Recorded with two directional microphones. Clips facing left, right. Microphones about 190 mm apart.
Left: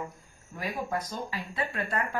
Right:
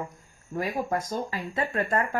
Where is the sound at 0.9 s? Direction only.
45° right (ahead or behind).